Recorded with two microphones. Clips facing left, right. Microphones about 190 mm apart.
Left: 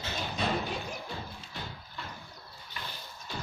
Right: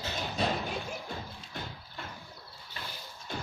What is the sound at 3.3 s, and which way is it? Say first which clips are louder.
Music: right 2 dB; 50° right (ahead or behind).